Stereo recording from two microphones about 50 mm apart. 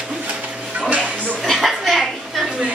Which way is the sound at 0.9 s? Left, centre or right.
Right.